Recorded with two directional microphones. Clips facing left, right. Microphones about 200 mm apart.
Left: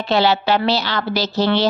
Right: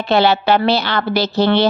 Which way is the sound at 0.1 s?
55° right (ahead or behind).